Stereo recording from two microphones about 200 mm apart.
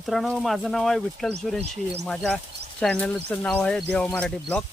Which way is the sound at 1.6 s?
30° right (ahead or behind).